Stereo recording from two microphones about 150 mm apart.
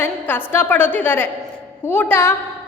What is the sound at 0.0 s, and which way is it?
A woman's voice, 15° left (ahead or behind).